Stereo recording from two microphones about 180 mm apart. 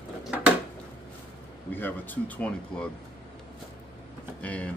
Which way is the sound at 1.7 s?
10° left (ahead or behind).